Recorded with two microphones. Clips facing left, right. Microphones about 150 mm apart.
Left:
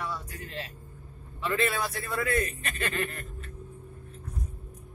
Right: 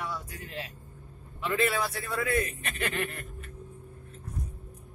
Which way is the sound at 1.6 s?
5° right (ahead or behind).